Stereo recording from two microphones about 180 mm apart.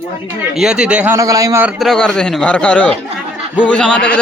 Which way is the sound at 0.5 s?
5° right (ahead or behind).